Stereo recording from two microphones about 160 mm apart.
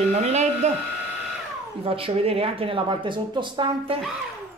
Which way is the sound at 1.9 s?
35° right (ahead or behind).